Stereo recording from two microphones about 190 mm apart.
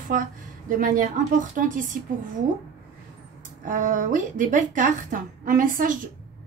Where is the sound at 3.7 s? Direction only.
45° right (ahead or behind).